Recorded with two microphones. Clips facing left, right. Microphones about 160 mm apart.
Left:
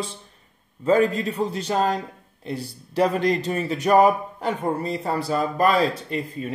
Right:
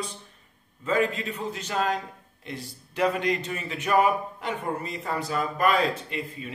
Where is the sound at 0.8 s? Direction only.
35° left (ahead or behind).